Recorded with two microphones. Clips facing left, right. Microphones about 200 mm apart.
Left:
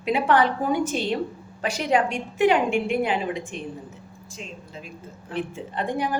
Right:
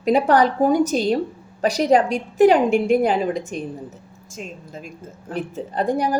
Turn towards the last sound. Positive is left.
turn(degrees=-40)  # may be behind; listen again after turning